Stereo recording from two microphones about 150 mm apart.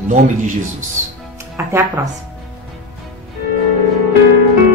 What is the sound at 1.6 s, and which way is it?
Speech, 15° right (ahead or behind).